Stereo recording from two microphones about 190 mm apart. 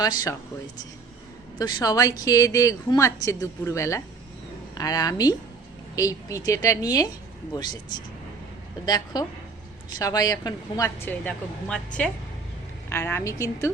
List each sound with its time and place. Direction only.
0.0 s a woman's voice: 20° left (ahead or behind)
1.5 s a woman's voice: 20° left (ahead or behind)
9.1 s a woman's voice: 20° left (ahead or behind)